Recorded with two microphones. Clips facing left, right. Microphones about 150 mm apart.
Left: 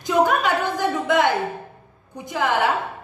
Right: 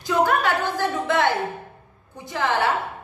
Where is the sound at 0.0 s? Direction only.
15° left (ahead or behind).